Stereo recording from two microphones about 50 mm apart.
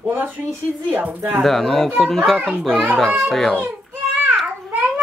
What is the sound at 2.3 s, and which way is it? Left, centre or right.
Speech, right.